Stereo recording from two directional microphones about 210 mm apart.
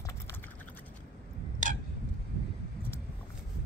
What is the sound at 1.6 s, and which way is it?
Tick-tock, 40° right (ahead or behind).